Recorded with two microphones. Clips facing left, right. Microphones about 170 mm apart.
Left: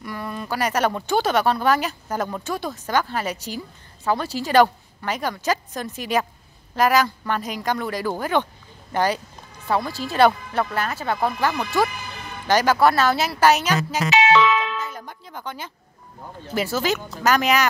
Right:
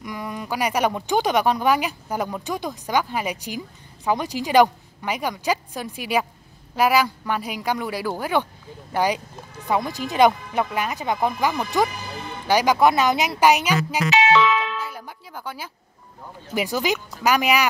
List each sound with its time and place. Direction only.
0.0 s speech: 15° right (ahead or behind)
14.2 s music: 90° left
14.8 s music: 10° right (ahead or behind)
16.5 s speech: 15° right (ahead or behind)